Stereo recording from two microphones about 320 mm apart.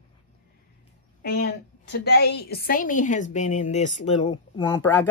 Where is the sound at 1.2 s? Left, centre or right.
Left.